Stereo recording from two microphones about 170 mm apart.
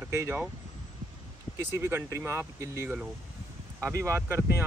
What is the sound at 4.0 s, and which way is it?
Speech, 15° right (ahead or behind).